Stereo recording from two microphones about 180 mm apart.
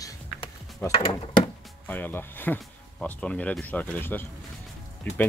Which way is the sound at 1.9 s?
10° left (ahead or behind).